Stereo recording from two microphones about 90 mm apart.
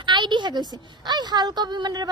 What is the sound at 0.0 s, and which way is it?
Speech, 60° right (ahead or behind).